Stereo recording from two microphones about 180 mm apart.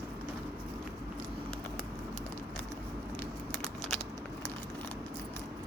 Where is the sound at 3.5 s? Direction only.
5° left (ahead or behind).